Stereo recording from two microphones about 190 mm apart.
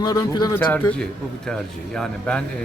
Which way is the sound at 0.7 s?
5° left (ahead or behind).